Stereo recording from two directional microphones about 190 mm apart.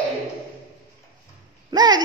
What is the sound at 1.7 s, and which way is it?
Speech, 20° right (ahead or behind).